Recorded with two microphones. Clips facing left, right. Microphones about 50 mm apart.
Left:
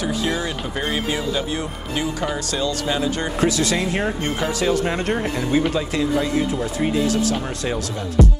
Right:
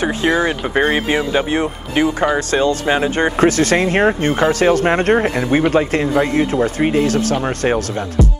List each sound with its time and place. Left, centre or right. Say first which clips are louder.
0.0 s speech: right 7 dB; right
8.2 s speech: left 1 dB; centre